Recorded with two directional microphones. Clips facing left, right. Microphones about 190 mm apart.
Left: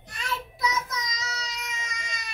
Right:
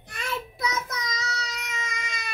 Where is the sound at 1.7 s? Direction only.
60° right (ahead or behind).